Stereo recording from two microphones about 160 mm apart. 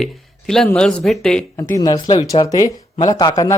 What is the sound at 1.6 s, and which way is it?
Speech, 20° left (ahead or behind).